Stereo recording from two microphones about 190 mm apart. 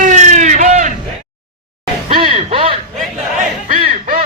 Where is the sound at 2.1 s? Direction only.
30° right (ahead or behind).